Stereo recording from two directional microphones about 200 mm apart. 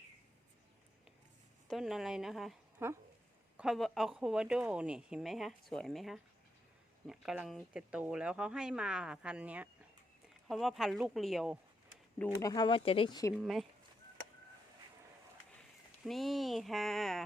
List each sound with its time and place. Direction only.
1.6 s a woman's voice: centre (ahead or behind)
12.2 s speech: 15° left (ahead or behind)
13.3 s speech: centre (ahead or behind)
16.0 s speech: centre (ahead or behind)